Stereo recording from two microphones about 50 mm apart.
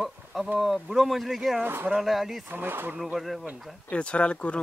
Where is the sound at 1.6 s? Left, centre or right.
Right.